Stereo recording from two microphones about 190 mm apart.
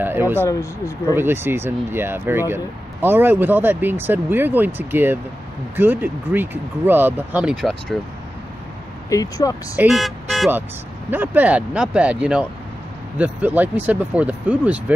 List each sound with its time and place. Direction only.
0.0 s speech: 10° right (ahead or behind)
0.5 s speech: 15° left (ahead or behind)
1.1 s speech: 10° right (ahead or behind)
9.1 s speech: 20° left (ahead or behind)
9.8 s speech: centre (ahead or behind)